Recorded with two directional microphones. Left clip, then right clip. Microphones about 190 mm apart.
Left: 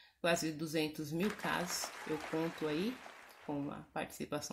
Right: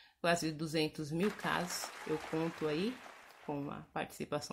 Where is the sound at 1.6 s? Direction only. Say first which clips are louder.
Even; centre (ahead or behind).